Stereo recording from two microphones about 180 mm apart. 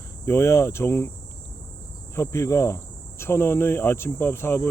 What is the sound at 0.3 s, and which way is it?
Speech, 15° left (ahead or behind).